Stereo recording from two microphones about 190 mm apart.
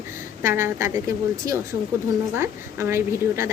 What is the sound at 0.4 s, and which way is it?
Speech, 15° right (ahead or behind).